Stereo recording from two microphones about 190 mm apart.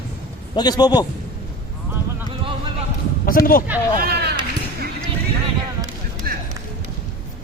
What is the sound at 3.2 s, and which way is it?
Speech, 50° left (ahead or behind).